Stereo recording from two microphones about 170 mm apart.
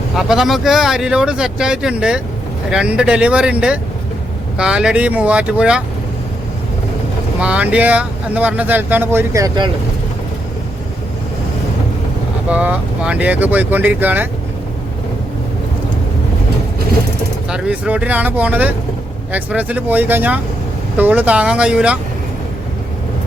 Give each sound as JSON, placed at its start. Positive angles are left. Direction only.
{"t": 0.2, "sound": "speech", "side_deg": 0}
{"t": 7.3, "sound": "speech", "side_deg": -5}
{"t": 12.5, "sound": "speech", "side_deg": -10}
{"t": 17.5, "sound": "speech", "side_deg": -5}